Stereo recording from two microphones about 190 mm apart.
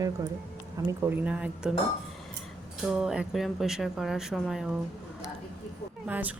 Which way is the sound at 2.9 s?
5° right (ahead or behind).